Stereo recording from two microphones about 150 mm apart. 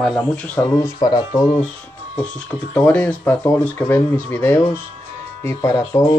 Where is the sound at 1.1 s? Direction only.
30° left (ahead or behind).